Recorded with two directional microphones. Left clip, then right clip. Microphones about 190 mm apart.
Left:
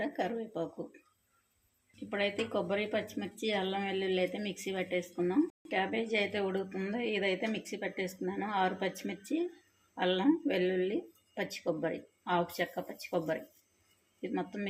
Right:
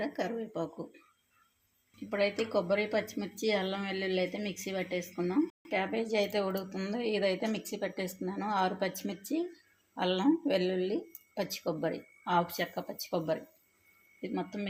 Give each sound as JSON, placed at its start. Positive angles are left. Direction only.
{"t": 0.0, "sound": "speech", "side_deg": -20}
{"t": 2.0, "sound": "speech", "side_deg": -20}